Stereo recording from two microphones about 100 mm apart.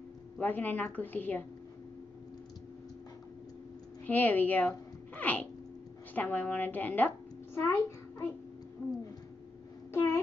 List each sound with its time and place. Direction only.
0.4 s a woman's voice: 15° left (ahead or behind)
4.0 s a child's voice: 15° left (ahead or behind)